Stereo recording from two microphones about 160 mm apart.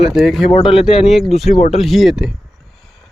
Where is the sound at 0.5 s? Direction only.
40° left (ahead or behind).